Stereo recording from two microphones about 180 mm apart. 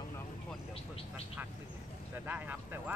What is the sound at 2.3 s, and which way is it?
Speech, 10° right (ahead or behind).